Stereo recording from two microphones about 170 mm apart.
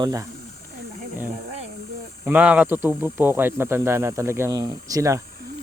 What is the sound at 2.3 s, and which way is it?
Speech, 10° right (ahead or behind).